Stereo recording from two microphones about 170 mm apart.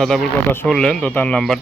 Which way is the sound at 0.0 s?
Centre (ahead or behind).